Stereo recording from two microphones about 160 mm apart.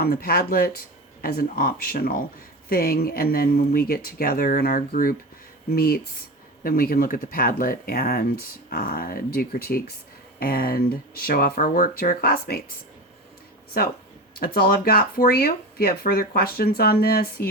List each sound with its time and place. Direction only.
0.0 s speech: 70° left (ahead or behind)
13.7 s speech: 65° left (ahead or behind)